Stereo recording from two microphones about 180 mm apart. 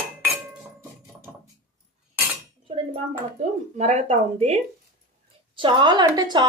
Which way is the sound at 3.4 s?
40° right (ahead or behind).